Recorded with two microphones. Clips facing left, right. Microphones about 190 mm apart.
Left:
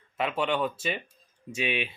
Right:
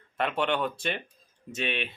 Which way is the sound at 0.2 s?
5° left (ahead or behind).